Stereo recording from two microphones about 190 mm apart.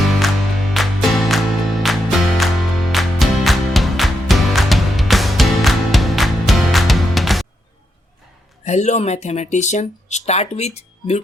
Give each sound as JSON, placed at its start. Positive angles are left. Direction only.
{"t": 0.0, "sound": "music", "side_deg": 0}
{"t": 8.6, "sound": "speech", "side_deg": 35}